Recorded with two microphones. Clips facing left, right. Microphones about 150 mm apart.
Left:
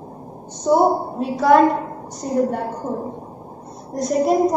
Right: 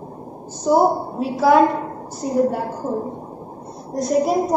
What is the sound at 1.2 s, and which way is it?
Speech, 5° right (ahead or behind).